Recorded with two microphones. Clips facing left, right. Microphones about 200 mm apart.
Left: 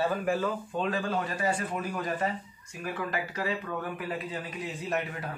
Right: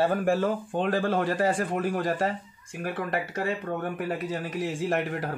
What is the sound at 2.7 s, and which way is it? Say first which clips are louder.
Speech: right 5 dB; 65° right (ahead or behind).